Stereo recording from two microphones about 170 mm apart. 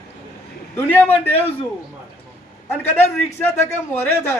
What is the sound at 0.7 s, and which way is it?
Speech, 10° left (ahead or behind).